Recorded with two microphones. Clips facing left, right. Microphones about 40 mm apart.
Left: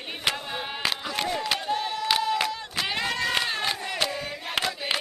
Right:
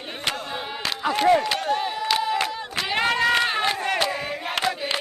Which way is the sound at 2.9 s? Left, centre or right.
Right.